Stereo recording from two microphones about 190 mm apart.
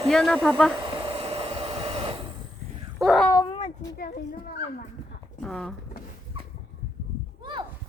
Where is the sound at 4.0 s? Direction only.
55° left (ahead or behind).